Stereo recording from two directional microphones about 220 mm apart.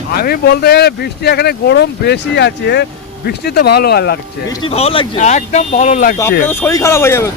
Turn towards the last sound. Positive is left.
turn(degrees=10)  # may be behind; listen again after turning